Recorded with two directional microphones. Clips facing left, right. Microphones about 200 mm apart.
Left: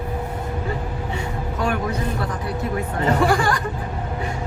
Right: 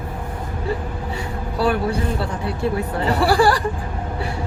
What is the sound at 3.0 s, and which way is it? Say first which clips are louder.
Speech: right 2 dB; 35° right (ahead or behind).